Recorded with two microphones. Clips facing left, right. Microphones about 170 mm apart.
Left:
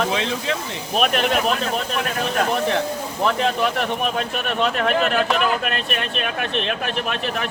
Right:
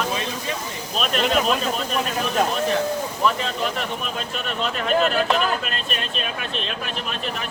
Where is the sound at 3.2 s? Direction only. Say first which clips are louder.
Left 4 dB; 65° left (ahead or behind).